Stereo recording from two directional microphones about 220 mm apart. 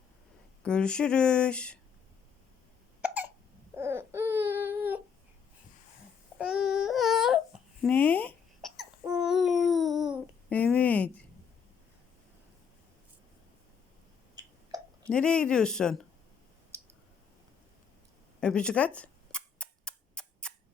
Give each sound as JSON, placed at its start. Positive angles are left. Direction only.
{"t": 0.6, "sound": "speech", "side_deg": 5}
{"t": 3.8, "sound": "baby cry", "side_deg": -10}
{"t": 6.4, "sound": "babbling", "side_deg": -5}
{"t": 7.9, "sound": "babbling", "side_deg": 5}
{"t": 14.4, "sound": "hiccup", "side_deg": -15}
{"t": 15.0, "sound": "speech", "side_deg": 5}
{"t": 16.7, "sound": "clicking", "side_deg": -10}
{"t": 18.3, "sound": "cap gun", "side_deg": 5}